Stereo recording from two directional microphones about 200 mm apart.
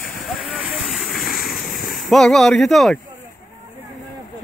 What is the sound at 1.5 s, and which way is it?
Splash, 45° left (ahead or behind).